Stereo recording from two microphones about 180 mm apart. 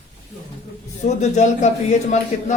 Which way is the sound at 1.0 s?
40° left (ahead or behind).